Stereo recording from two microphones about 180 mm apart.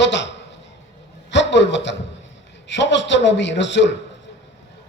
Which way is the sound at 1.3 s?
80° left.